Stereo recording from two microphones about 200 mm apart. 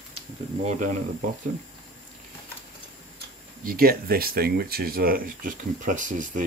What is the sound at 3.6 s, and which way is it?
Speech, 45° right (ahead or behind).